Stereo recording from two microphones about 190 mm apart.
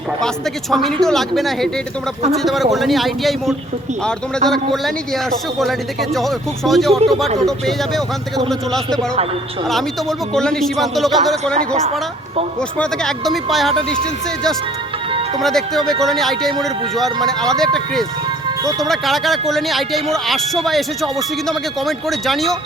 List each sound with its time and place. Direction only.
0.7 s a man's voice: centre (ahead or behind)
12.8 s a man's voice: 5° left (ahead or behind)